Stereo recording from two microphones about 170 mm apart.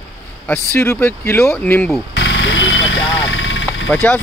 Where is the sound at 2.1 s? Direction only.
90° left.